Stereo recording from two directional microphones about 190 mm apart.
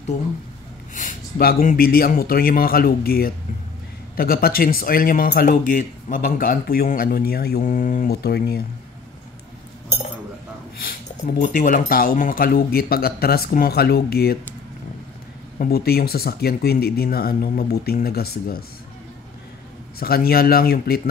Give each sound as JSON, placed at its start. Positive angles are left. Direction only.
{"t": 0.9, "sound": "speech", "side_deg": 50}
{"t": 10.8, "sound": "speech", "side_deg": 50}
{"t": 15.6, "sound": "speech", "side_deg": 55}
{"t": 20.0, "sound": "speech", "side_deg": 55}